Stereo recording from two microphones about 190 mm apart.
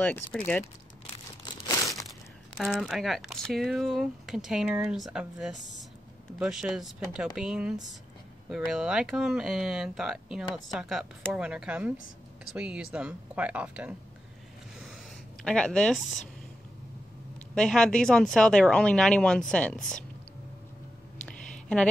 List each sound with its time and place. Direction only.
0.0 s speech: 10° left (ahead or behind)
1.4 s crumpling: 15° left (ahead or behind)
2.0 s speech: centre (ahead or behind)
15.4 s speech: 5° left (ahead or behind)
17.6 s speech: 5° left (ahead or behind)
21.3 s a sound: 5° left (ahead or behind)